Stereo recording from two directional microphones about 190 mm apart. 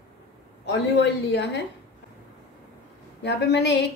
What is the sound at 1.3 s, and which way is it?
Speech, 65° left (ahead or behind).